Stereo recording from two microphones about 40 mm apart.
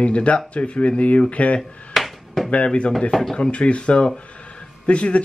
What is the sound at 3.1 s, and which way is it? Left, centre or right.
Speech, centre.